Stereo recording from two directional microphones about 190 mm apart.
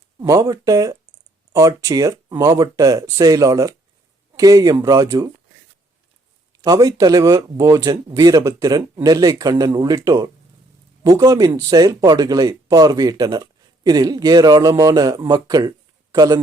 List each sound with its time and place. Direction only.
0.2 s speech: 20° right (ahead or behind)
6.6 s speech: 20° right (ahead or behind)